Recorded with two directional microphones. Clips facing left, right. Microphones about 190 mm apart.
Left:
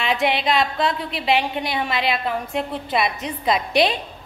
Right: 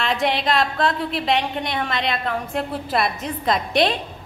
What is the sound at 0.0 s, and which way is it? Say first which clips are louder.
A woman's voice: left 1 dB; centre (ahead or behind).